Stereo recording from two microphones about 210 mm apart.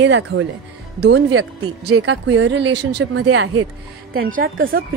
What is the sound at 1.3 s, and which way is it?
A woman's voice, 85° right.